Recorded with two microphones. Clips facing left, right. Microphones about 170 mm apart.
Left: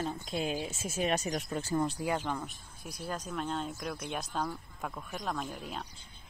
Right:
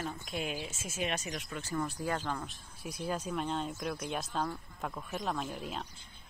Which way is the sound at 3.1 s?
5° right (ahead or behind).